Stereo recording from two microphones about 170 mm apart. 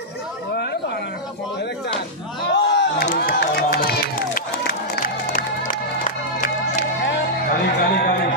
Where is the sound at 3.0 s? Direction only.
55° left (ahead or behind).